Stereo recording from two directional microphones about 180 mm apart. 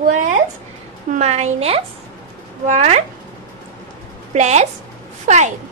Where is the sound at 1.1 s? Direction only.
40° right (ahead or behind).